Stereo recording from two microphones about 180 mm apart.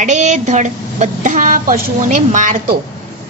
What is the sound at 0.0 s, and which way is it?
A woman's voice, 40° right (ahead or behind).